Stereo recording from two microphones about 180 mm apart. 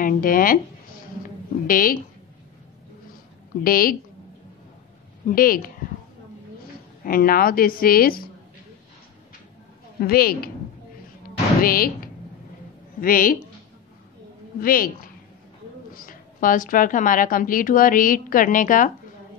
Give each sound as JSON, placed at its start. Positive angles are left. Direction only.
{"t": 0.0, "sound": "a woman's voice", "side_deg": 50}
{"t": 1.2, "sound": "a sound", "side_deg": 50}
{"t": 3.6, "sound": "a woman's voice", "side_deg": 55}
{"t": 5.3, "sound": "a woman's voice", "side_deg": 55}
{"t": 7.1, "sound": "a woman's voice", "side_deg": 55}
{"t": 9.9, "sound": "a woman's voice", "side_deg": 55}
{"t": 11.6, "sound": "a woman's voice", "side_deg": 55}
{"t": 13.0, "sound": "a woman's voice", "side_deg": 50}
{"t": 14.6, "sound": "a woman's voice", "side_deg": 55}
{"t": 15.9, "sound": "a woman's voice", "side_deg": 50}